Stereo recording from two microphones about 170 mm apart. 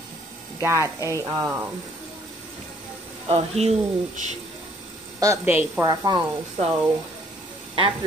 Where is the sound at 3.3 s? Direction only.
40° right (ahead or behind).